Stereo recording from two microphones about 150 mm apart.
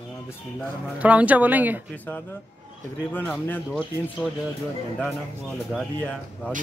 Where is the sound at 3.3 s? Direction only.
10° left (ahead or behind).